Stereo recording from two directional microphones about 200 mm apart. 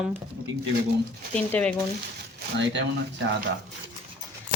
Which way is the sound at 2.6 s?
60° right (ahead or behind).